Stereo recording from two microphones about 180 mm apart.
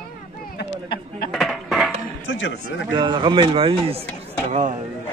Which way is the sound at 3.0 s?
25° right (ahead or behind).